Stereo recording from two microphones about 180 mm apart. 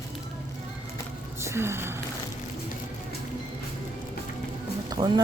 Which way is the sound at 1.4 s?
15° right (ahead or behind).